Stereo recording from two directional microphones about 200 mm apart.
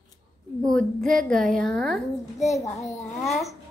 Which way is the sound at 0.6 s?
Centre (ahead or behind).